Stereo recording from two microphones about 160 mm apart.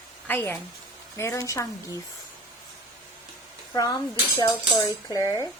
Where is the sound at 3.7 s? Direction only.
25° left (ahead or behind).